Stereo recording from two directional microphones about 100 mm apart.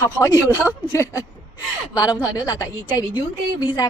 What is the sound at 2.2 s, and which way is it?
A woman's voice, 35° left (ahead or behind).